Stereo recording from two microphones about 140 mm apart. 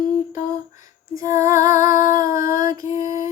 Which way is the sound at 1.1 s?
25° right (ahead or behind).